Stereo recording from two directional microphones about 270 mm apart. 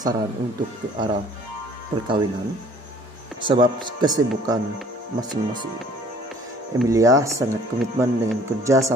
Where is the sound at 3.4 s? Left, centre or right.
Centre.